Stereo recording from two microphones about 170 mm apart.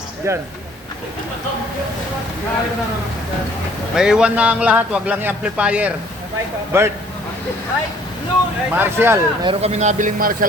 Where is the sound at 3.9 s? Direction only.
5° right (ahead or behind).